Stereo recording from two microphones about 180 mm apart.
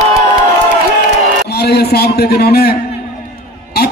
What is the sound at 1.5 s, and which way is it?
A man's voice, 65° left (ahead or behind).